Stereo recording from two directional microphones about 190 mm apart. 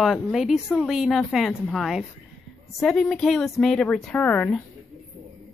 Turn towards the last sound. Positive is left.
turn(degrees=5)  # may be behind; listen again after turning